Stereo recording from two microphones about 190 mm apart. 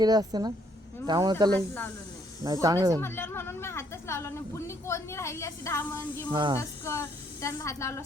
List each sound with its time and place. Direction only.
0.0 s a woman's voice: 20° right (ahead or behind)
1.5 s a woman's voice: 10° left (ahead or behind)
2.4 s speech: 20° right (ahead or behind)
3.0 s a woman's voice: 10° left (ahead or behind)
6.3 s a woman's voice: 25° right (ahead or behind)
6.6 s a woman's voice: 15° left (ahead or behind)